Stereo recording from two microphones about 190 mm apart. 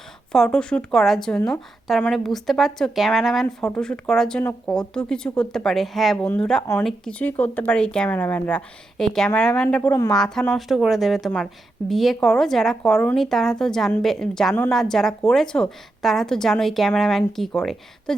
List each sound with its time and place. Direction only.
0.3 s speech: 5° left (ahead or behind)